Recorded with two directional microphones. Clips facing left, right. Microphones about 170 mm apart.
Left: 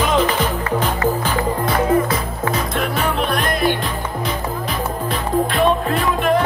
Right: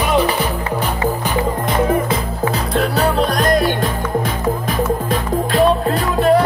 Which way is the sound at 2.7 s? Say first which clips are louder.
Right 4 dB; 35° right (ahead or behind).